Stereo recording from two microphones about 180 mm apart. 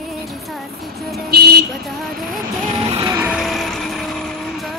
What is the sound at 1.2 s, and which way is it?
Vehicle, 60° right (ahead or behind).